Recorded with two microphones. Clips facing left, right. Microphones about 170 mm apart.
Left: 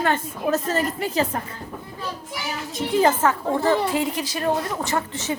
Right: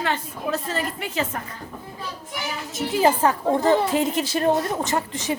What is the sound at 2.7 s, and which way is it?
Speech, 5° right (ahead or behind).